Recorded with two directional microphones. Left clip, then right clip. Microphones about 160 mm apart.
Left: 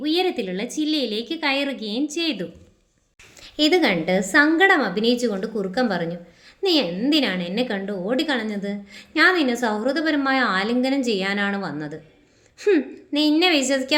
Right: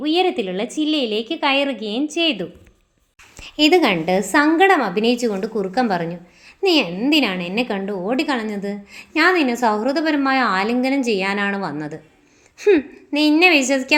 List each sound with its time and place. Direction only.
0.0 s a woman's voice: 10° right (ahead or behind)
3.4 s a woman's voice: 20° right (ahead or behind)